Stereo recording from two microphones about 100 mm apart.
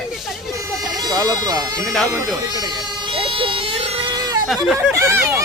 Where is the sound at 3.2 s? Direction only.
60° right (ahead or behind).